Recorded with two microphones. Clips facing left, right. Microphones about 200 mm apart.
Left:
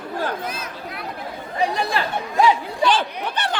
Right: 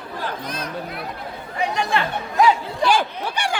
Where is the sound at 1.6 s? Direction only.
35° left (ahead or behind).